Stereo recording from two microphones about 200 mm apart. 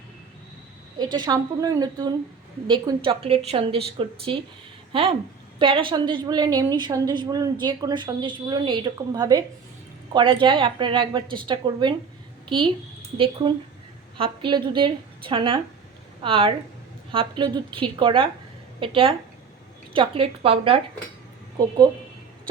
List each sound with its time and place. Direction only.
0.9 s a woman's voice: 20° right (ahead or behind)